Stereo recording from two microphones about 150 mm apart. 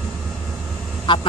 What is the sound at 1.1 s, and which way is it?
Speech, 30° left (ahead or behind).